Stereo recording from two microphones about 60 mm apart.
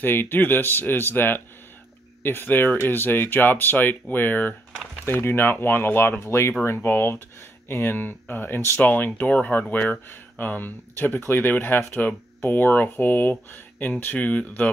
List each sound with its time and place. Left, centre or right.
0.0 s speech: left